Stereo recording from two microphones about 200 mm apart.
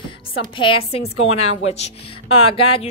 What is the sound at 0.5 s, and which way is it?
A woman's voice, 25° left (ahead or behind).